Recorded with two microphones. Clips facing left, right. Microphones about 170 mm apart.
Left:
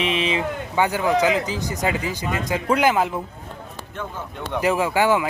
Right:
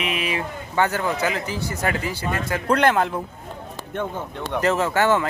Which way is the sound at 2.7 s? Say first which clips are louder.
Even; 5° left (ahead or behind).